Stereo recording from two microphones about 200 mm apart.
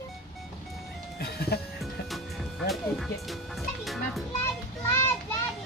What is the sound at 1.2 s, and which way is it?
Music, 50° left (ahead or behind).